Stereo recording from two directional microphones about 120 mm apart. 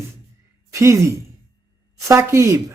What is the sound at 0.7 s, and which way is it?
A woman's voice, 25° right (ahead or behind).